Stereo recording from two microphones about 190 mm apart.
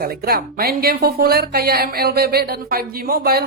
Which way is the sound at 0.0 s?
55° right (ahead or behind).